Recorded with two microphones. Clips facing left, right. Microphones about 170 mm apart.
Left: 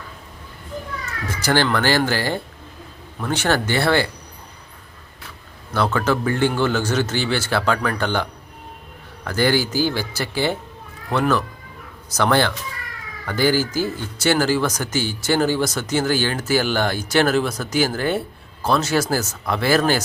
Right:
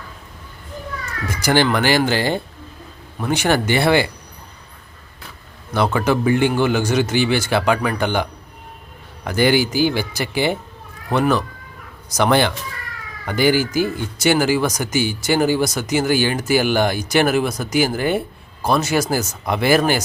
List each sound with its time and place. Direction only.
1.3 s speech: 15° right (ahead or behind)
5.7 s speech: 15° right (ahead or behind)